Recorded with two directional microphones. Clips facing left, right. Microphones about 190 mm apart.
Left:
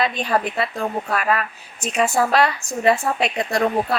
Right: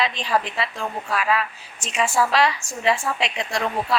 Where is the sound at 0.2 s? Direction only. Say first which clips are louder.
Left 3 dB; 55° left (ahead or behind).